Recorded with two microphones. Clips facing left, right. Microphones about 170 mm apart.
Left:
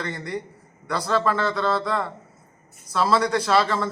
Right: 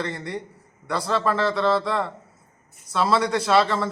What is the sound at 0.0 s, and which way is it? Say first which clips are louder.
Speech: right 1 dB; 25° right (ahead or behind).